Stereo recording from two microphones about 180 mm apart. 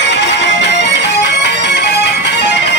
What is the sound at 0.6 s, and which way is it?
Music, 70° left (ahead or behind).